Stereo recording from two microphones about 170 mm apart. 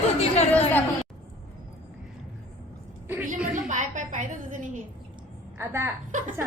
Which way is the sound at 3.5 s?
45° right (ahead or behind).